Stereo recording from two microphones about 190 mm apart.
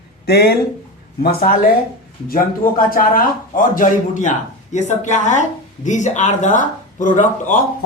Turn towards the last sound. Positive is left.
turn(degrees=45)  # may be behind; listen again after turning